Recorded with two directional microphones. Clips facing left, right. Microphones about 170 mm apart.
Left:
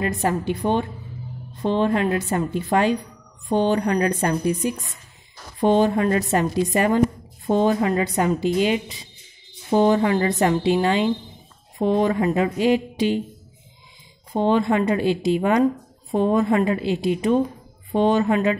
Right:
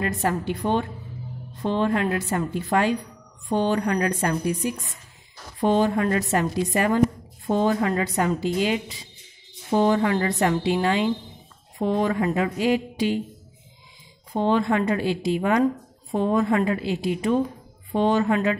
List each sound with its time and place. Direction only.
0.0 s a woman's voice: 20° left (ahead or behind)
14.3 s a woman's voice: 20° left (ahead or behind)